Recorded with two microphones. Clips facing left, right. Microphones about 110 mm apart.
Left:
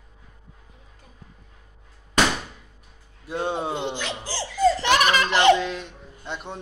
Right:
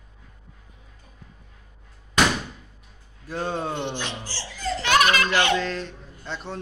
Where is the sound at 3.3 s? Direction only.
20° left (ahead or behind).